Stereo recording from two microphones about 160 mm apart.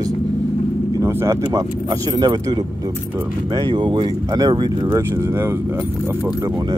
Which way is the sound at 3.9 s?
25° right (ahead or behind).